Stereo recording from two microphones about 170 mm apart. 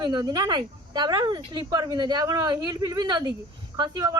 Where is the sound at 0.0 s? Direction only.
25° right (ahead or behind).